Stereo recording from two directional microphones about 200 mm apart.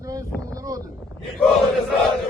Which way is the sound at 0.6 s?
15° right (ahead or behind).